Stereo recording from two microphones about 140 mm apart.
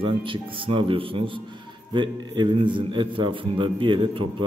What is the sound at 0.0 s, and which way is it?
A man's voice, 40° right (ahead or behind).